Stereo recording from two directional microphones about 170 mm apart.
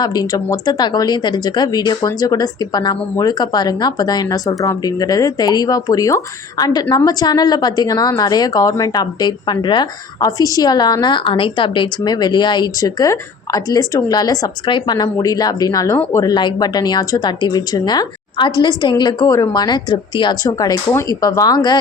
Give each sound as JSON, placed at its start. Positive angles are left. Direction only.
{"t": 0.0, "sound": "speech", "side_deg": 25}